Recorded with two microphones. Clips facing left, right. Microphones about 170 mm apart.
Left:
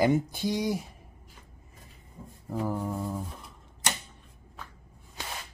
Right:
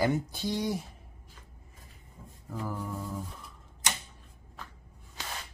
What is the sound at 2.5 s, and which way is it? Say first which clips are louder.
Mantra: left 5 dB; 30° left (ahead or behind).